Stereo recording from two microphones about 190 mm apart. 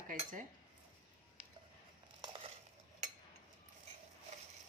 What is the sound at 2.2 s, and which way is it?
Crushing, 30° right (ahead or behind).